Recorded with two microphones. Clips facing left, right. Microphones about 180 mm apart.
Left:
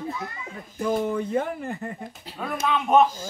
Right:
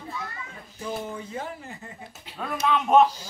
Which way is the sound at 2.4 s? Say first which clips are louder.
Even; centre (ahead or behind).